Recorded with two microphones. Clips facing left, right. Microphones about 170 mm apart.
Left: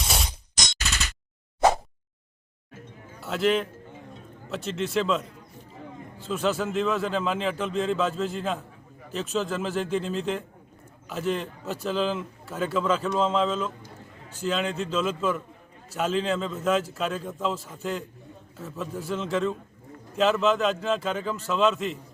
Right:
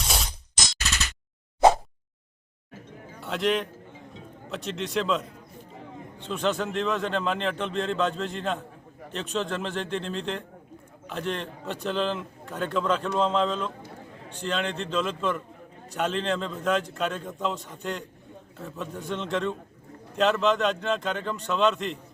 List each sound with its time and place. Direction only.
3.2 s a man's voice: centre (ahead or behind)